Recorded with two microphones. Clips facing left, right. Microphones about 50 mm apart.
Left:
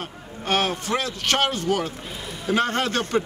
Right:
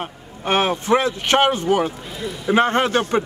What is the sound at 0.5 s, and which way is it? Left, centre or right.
Speech, right.